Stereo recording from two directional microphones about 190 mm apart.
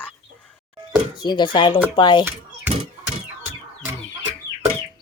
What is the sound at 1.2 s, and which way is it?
Speech, 25° left (ahead or behind).